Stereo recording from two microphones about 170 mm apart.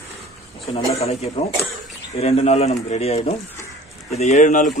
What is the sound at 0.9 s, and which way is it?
Speech, 35° left (ahead or behind).